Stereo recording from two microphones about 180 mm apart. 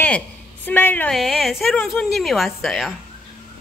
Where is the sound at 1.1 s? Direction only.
Centre (ahead or behind).